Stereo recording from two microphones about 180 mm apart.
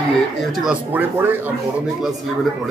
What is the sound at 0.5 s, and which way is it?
Speech, 5° right (ahead or behind).